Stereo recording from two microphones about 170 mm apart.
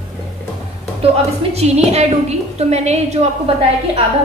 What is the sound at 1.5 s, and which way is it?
A woman's voice, 40° right (ahead or behind).